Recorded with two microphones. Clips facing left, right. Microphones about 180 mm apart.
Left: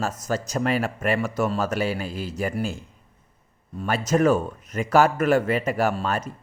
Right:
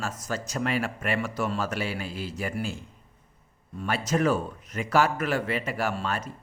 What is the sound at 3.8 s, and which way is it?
A man's voice, 45° left (ahead or behind).